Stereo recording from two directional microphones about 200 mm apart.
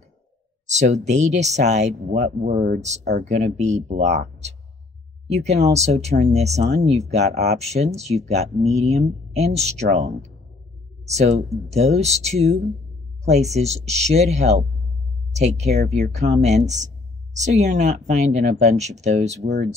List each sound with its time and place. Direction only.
0.7 s speech: 35° right (ahead or behind)
4.0 s speech: 55° right (ahead or behind)
5.3 s speech: 35° right (ahead or behind)